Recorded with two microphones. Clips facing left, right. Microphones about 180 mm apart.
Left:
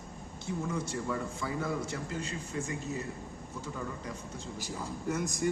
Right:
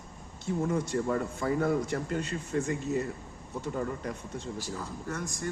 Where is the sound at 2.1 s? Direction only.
65° right (ahead or behind).